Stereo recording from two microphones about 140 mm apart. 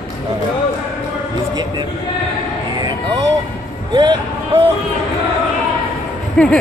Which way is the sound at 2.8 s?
30° right (ahead or behind).